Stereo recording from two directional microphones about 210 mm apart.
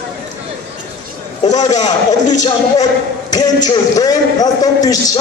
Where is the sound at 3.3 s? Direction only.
20° left (ahead or behind).